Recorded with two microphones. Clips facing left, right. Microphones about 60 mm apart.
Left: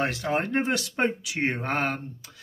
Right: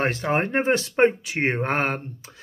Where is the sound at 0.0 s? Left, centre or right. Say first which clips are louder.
Right 3 dB; right.